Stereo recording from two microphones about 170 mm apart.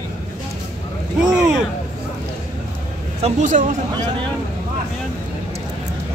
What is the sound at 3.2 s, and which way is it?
Speech, 45° right (ahead or behind).